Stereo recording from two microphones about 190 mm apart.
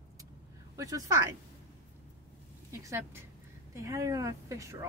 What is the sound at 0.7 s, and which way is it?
Speech, 15° right (ahead or behind).